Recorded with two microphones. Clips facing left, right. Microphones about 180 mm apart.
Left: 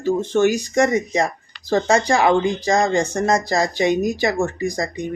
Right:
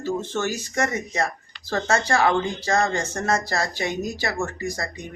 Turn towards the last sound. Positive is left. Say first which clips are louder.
# left 6 dB
turn(degrees=15)  # may be behind; listen again after turning